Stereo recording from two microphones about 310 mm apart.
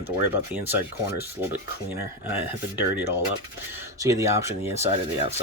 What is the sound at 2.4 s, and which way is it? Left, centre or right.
Speech, centre.